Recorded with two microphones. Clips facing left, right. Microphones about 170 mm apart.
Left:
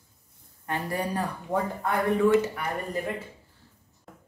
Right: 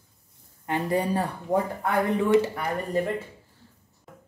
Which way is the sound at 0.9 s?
20° right (ahead or behind).